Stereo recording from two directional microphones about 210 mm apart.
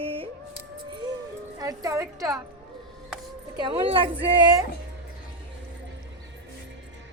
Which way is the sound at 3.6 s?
25° right (ahead or behind).